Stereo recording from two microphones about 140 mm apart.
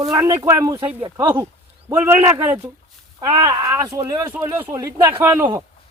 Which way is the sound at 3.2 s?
30° right (ahead or behind).